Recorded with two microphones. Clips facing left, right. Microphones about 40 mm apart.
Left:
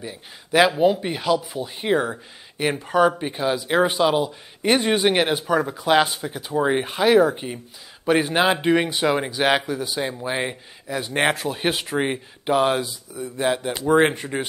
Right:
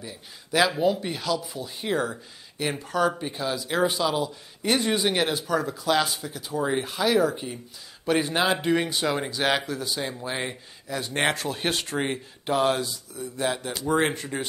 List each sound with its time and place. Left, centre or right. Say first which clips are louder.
0.0 s speech: left 5 dB; left